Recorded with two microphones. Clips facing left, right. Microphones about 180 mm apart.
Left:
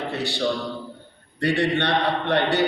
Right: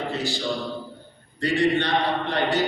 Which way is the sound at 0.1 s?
65° left (ahead or behind).